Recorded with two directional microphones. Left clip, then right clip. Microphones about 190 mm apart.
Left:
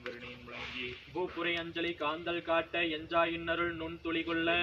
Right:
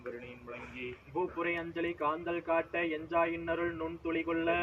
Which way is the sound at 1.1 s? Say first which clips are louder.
Right 1 dB; 10° left (ahead or behind).